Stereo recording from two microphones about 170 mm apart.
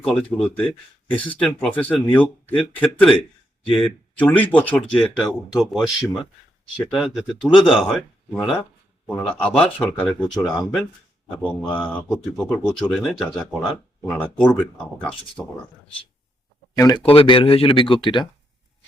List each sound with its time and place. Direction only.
0.0 s speech: 5° left (ahead or behind)
16.7 s speech: 20° left (ahead or behind)
17.0 s speech: 35° left (ahead or behind)